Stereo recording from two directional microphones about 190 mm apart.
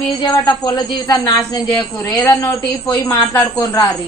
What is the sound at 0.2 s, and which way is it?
Speech, 20° left (ahead or behind).